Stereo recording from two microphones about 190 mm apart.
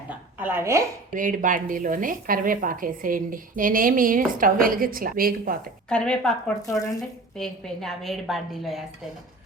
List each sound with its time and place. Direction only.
0.1 s a sound: 10° right (ahead or behind)
1.1 s a woman's voice: 45° right (ahead or behind)
5.9 s a woman's voice: 5° left (ahead or behind)
6.7 s speech: 15° left (ahead or behind)
7.3 s a woman's voice: centre (ahead or behind)